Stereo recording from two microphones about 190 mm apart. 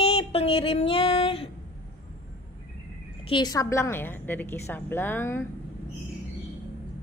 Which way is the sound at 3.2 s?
25° left (ahead or behind).